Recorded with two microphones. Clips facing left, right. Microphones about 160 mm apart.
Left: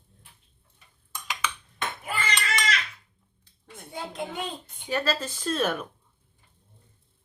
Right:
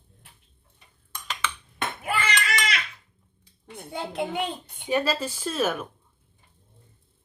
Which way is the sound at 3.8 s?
65° right (ahead or behind).